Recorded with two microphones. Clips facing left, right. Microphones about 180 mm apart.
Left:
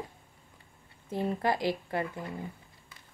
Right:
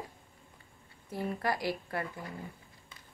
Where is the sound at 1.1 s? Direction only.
25° left (ahead or behind).